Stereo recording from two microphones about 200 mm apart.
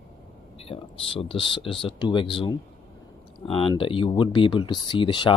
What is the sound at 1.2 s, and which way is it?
Speech, 25° left (ahead or behind).